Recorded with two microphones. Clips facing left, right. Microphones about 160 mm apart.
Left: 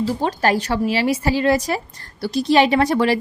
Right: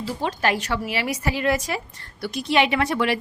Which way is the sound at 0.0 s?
40° left (ahead or behind).